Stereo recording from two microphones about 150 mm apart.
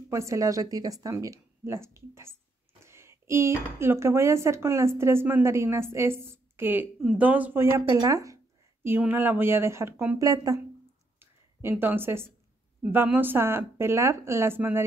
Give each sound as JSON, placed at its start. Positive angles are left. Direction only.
{"t": 0.1, "sound": "speech", "side_deg": -20}
{"t": 11.1, "sound": "a sound", "side_deg": -15}
{"t": 12.9, "sound": "speech", "side_deg": -15}